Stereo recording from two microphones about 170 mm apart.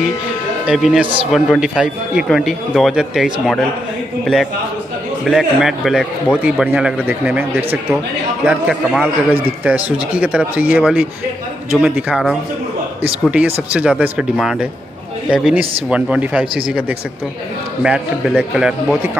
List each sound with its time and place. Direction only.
0.7 s speech: centre (ahead or behind)
5.2 s speech: centre (ahead or behind)
17.8 s speech: 5° right (ahead or behind)